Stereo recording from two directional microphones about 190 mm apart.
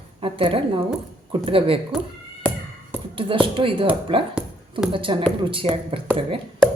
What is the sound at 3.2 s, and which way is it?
Speech, 25° right (ahead or behind).